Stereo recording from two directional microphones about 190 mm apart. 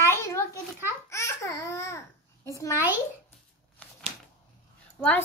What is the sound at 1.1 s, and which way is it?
Babbling, 15° left (ahead or behind).